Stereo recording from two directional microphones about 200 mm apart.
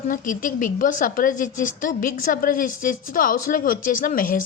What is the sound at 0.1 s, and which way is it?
Speech, 40° left (ahead or behind).